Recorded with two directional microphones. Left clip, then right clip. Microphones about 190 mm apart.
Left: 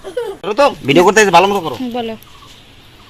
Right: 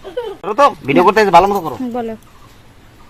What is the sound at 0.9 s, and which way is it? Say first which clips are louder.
Speech: left 1 dB; 35° left (ahead or behind).